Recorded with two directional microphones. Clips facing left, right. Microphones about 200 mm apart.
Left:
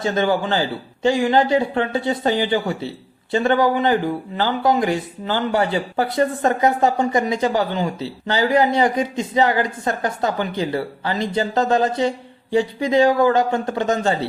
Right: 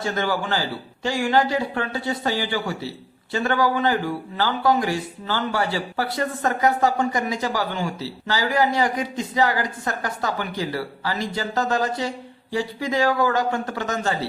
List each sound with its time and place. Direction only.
0.0 s speech: 20° left (ahead or behind)